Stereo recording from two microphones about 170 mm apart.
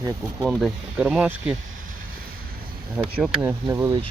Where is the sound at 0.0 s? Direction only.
20° right (ahead or behind).